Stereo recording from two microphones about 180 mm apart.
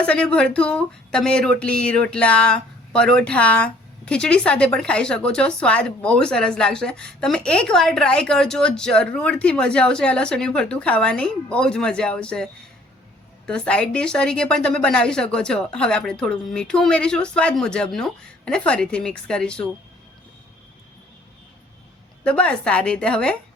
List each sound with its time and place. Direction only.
0.0 s speech: 5° left (ahead or behind)
13.5 s speech: 5° left (ahead or behind)
22.2 s speech: 5° left (ahead or behind)